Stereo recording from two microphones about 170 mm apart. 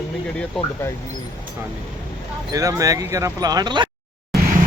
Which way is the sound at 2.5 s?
20° right (ahead or behind).